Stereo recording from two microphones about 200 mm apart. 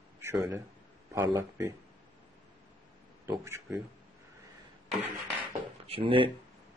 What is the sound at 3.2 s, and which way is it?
Speech, 15° right (ahead or behind).